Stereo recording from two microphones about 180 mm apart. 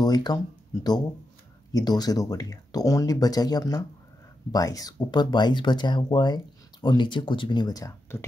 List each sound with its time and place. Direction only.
0.0 s speech: 20° left (ahead or behind)
1.7 s speech: 20° left (ahead or behind)